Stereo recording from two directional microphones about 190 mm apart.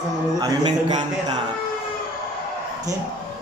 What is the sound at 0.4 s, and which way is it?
Speech, 20° right (ahead or behind).